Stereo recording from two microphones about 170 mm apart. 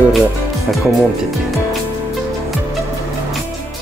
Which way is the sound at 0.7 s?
Centre (ahead or behind).